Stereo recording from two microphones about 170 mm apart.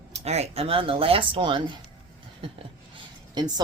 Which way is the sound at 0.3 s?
40° right (ahead or behind).